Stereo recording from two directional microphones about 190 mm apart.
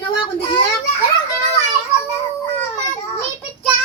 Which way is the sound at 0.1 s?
25° left (ahead or behind).